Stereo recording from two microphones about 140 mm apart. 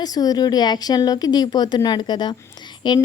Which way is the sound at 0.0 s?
30° left (ahead or behind).